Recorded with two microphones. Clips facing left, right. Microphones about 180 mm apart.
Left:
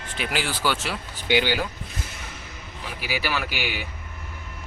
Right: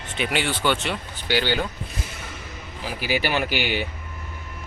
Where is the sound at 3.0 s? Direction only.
30° right (ahead or behind).